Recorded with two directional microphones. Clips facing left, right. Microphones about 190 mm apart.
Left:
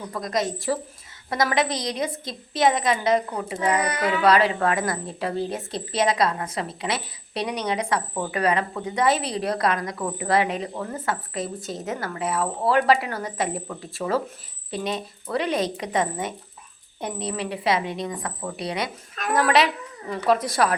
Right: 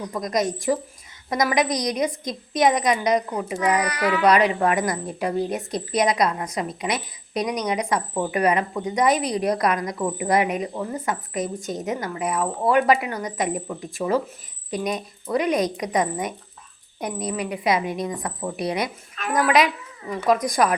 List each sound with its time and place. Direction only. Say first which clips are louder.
0.1 s a woman's voice: right 2 dB; 20° right (ahead or behind)
3.6 s a child's voice: right 1 dB; 25° left (ahead or behind)
4.2 s a woman's voice: right 1 dB; 15° right (ahead or behind)
7.3 s a child's voice: right 3 dB; 30° left (ahead or behind)
7.6 s a woman's voice: right 1 dB; 15° right (ahead or behind)
17.3 s a woman's voice: right 2 dB; 30° left (ahead or behind)
17.6 s a woman's voice: right 1 dB; 15° right (ahead or behind)
19.2 s a woman's voice: left 1 dB; 40° left (ahead or behind)
20.1 s a woman's voice: right 1 dB; 10° right (ahead or behind)